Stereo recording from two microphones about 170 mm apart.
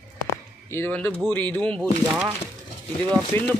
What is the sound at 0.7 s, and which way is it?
Speech, 10° left (ahead or behind).